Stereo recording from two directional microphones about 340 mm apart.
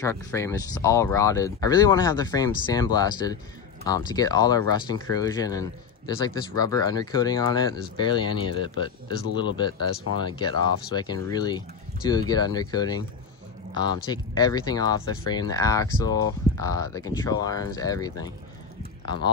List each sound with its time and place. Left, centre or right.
0.0 s speech: centre